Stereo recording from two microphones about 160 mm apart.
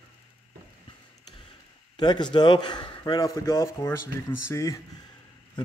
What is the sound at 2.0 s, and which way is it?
A man's voice, 25° left (ahead or behind).